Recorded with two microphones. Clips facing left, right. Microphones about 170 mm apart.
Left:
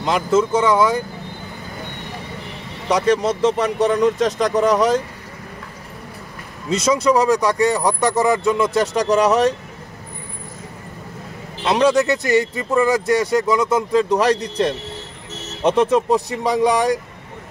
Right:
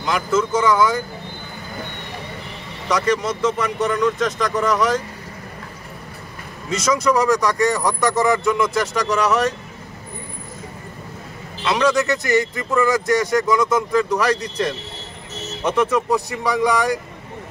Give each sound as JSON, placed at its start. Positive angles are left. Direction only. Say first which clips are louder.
{"t": 0.0, "sound": "speech", "louder": "left 3 dB", "side_deg": 30}
{"t": 2.9, "sound": "speech", "louder": "left 3 dB", "side_deg": 30}
{"t": 6.7, "sound": "speech", "louder": "left 2 dB", "side_deg": 30}
{"t": 11.6, "sound": "a man's voice", "louder": "left 3 dB", "side_deg": 35}